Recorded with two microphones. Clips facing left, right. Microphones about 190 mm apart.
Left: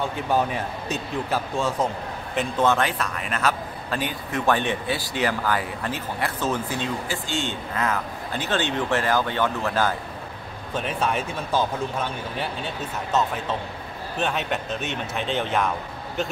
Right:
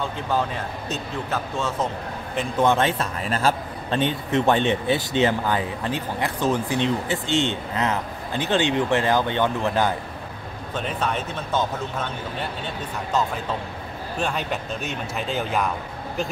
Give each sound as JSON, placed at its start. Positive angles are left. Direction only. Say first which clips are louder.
{"t": 0.3, "sound": "speech", "louder": "left 2 dB", "side_deg": 15}
{"t": 2.6, "sound": "a man's voice", "louder": "right 2 dB", "side_deg": -20}
{"t": 10.7, "sound": "speech", "louder": "left 1 dB", "side_deg": 10}
{"t": 14.2, "sound": "speech", "louder": "left 1 dB", "side_deg": 0}